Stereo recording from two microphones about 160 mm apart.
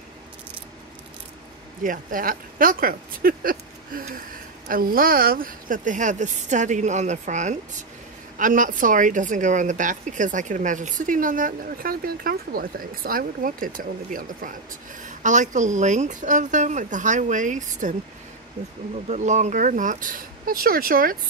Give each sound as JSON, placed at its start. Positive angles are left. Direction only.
{"t": 1.8, "sound": "speech", "side_deg": -55}
{"t": 19.0, "sound": "speech", "side_deg": -45}